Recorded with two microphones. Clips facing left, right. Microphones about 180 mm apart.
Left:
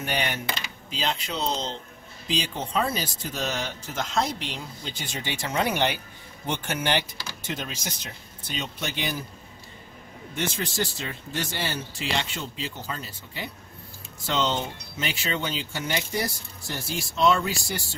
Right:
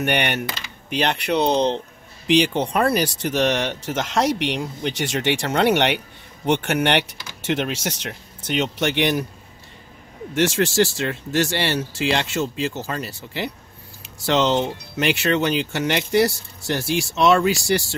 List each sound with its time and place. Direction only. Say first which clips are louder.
0.0 s speech: right 7 dB; 70° right (ahead or behind)
10.3 s speech: right 11 dB; 80° right